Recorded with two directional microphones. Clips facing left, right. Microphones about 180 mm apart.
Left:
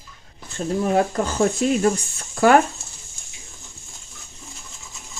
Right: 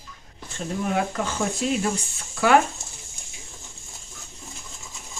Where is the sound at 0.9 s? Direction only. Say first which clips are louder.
Left 5 dB; 40° left (ahead or behind).